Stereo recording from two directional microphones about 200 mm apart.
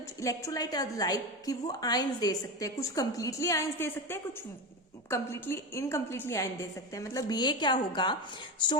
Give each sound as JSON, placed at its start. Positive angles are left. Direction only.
{"t": 0.2, "sound": "a woman's voice", "side_deg": 15}